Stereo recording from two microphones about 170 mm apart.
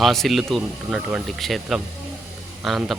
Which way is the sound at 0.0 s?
Centre (ahead or behind).